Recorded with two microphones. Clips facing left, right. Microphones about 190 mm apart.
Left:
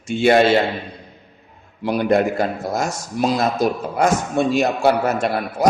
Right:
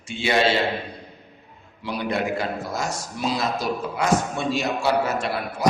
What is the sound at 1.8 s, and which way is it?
A man's voice, 50° left (ahead or behind).